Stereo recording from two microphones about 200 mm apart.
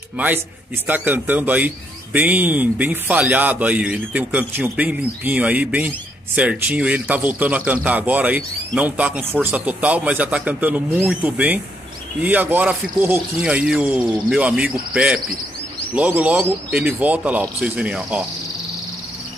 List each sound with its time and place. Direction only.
0.8 s speech: 10° right (ahead or behind)